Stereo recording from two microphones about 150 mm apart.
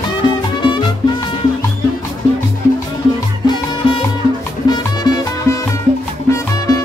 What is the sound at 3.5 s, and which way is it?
Music, 35° left (ahead or behind).